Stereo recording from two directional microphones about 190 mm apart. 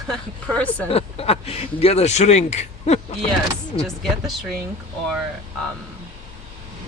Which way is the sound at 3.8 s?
Centre (ahead or behind).